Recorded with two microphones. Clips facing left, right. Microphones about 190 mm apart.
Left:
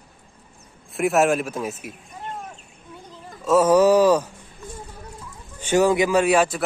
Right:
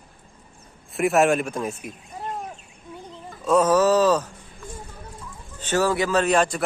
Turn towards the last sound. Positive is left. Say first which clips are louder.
# left 2 dB
turn(degrees=10)  # may be behind; listen again after turning